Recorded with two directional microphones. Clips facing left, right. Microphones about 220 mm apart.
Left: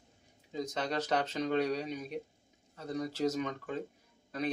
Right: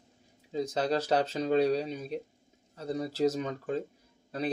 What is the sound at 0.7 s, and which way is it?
Speech, 30° right (ahead or behind).